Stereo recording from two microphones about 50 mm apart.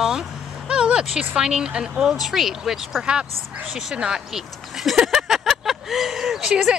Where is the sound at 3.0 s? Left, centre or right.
Centre.